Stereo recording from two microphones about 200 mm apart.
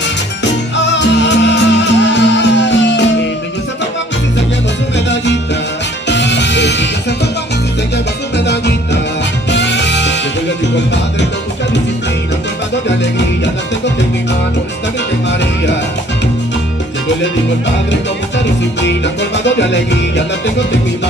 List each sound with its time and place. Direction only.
0.7 s music: 60° left (ahead or behind)
4.9 s music: 60° left (ahead or behind)
8.5 s music: 55° left (ahead or behind)
19.4 s music: 60° left (ahead or behind)